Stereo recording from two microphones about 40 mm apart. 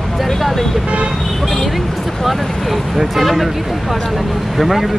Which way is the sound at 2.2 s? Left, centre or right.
Centre.